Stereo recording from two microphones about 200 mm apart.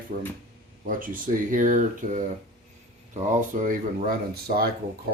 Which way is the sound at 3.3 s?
40° right (ahead or behind).